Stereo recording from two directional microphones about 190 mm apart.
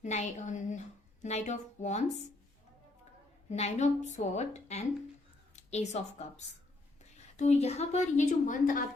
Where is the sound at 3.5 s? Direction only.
35° left (ahead or behind).